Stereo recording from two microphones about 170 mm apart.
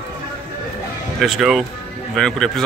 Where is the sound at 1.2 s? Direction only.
Centre (ahead or behind).